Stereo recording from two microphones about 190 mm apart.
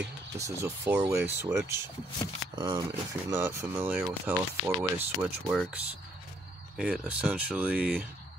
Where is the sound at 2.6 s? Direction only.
20° right (ahead or behind).